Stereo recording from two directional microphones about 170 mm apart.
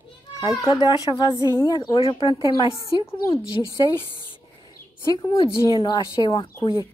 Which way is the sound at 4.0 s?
30° left (ahead or behind).